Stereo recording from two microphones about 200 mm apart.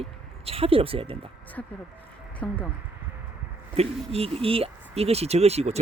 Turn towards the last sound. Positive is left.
turn(degrees=-30)  # may be behind; listen again after turning